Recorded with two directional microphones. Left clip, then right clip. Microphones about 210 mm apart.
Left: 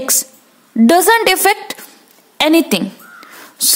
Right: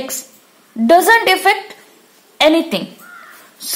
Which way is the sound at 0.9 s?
50° left (ahead or behind).